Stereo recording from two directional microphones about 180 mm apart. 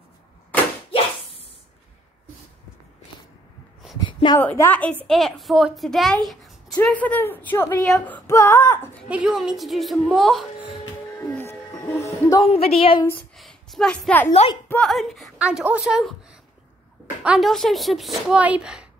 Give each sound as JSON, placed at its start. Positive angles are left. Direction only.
{"t": 4.1, "sound": "a sound", "side_deg": 25}
{"t": 4.4, "sound": "female singing", "side_deg": 10}
{"t": 5.0, "sound": "a woman's voice", "side_deg": 0}
{"t": 7.9, "sound": "female singing", "side_deg": 10}
{"t": 9.1, "sound": "a woman's voice", "side_deg": -5}
{"t": 12.0, "sound": "music", "side_deg": 15}
{"t": 12.4, "sound": "a woman's voice", "side_deg": 35}
{"t": 13.4, "sound": "a sound", "side_deg": 0}
{"t": 14.7, "sound": "a woman's voice", "side_deg": 5}